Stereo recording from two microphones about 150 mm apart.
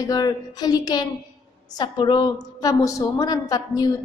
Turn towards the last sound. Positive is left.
turn(degrees=25)  # may be behind; listen again after turning